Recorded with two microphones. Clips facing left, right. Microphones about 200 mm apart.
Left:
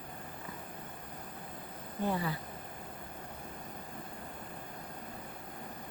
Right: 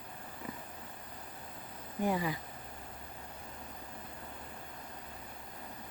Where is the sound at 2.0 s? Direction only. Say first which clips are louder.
Right 1 dB; 15° right (ahead or behind).